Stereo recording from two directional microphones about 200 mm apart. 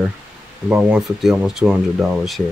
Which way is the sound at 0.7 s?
5° right (ahead or behind).